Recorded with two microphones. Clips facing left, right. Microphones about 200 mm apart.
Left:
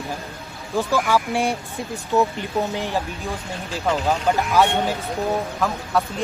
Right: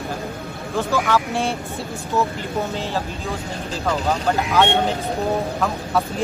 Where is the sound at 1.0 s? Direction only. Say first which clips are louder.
Even; 10° left (ahead or behind).